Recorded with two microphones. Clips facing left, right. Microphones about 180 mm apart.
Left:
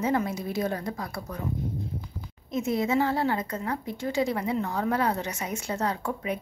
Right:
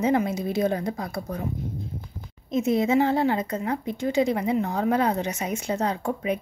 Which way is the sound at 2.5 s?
20° right (ahead or behind).